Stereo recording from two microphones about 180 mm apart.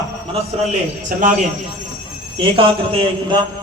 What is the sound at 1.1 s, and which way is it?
Speech, 50° right (ahead or behind).